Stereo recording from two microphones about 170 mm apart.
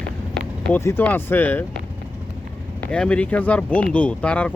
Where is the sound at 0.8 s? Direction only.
10° left (ahead or behind).